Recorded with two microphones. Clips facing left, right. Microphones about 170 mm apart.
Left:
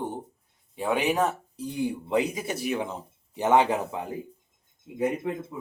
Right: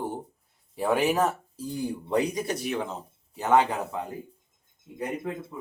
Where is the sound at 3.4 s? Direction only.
20° left (ahead or behind).